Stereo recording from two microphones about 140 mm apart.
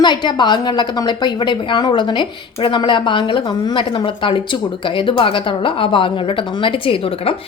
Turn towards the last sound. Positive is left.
turn(degrees=40)  # may be behind; listen again after turning